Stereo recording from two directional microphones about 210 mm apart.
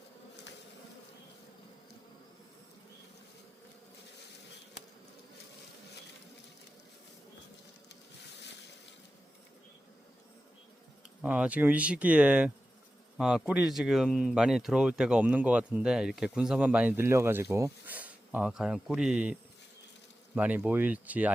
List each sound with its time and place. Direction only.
11.2 s speech: 5° right (ahead or behind)